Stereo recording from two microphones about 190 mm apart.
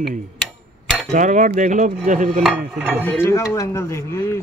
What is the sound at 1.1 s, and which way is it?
Cutlery, 45° right (ahead or behind).